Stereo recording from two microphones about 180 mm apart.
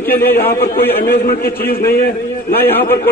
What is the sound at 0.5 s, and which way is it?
A man's voice, 55° left (ahead or behind).